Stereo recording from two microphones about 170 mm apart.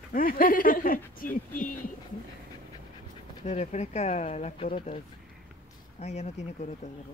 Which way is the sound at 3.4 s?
45° left (ahead or behind).